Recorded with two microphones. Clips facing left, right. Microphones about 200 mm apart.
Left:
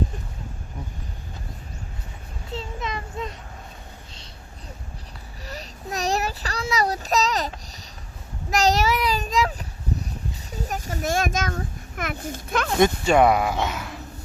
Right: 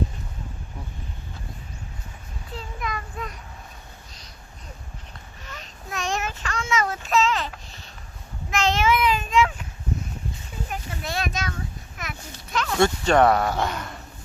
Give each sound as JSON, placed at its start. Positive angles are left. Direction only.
{"t": 2.6, "sound": "child singing", "side_deg": 25}
{"t": 5.5, "sound": "child singing", "side_deg": 35}
{"t": 9.9, "sound": "a sound", "side_deg": 35}
{"t": 13.1, "sound": "speech", "side_deg": 10}